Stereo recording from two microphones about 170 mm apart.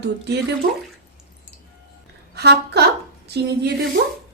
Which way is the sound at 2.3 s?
80° right.